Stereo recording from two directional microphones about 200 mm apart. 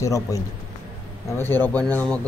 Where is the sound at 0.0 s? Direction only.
15° left (ahead or behind).